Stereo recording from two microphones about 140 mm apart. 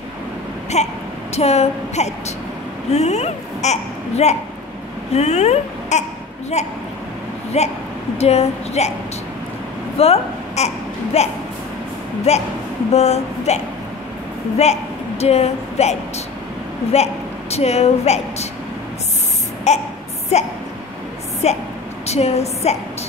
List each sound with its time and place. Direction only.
0.7 s speech: 50° left (ahead or behind)
9.9 s a woman's voice: 45° left (ahead or behind)
14.6 s a woman's voice: 50° left (ahead or behind)
19.7 s a sound: 50° left (ahead or behind)
20.3 s a woman's voice: 50° left (ahead or behind)